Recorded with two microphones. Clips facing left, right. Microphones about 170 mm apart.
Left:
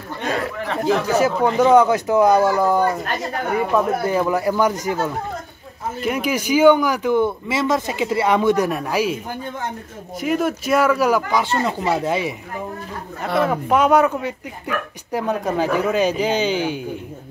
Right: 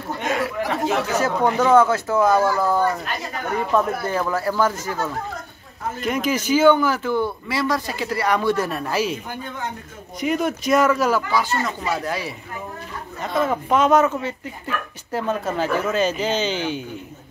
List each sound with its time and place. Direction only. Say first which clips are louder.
0.2 s chatter: even; 35° left (ahead or behind)
1.1 s speech: left 3 dB; 10° left (ahead or behind)
5.9 s speech: left 1 dB; 10° left (ahead or behind)
10.2 s speech: left 1 dB; 5° left (ahead or behind)
11.4 s speech: left 4 dB; 30° left (ahead or behind)
13.5 s speech: even; 10° left (ahead or behind)